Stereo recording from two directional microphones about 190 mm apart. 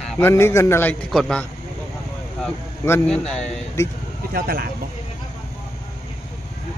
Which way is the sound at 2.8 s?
10° left (ahead or behind).